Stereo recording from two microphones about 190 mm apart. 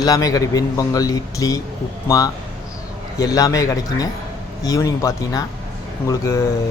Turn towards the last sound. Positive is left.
turn(degrees=15)  # may be behind; listen again after turning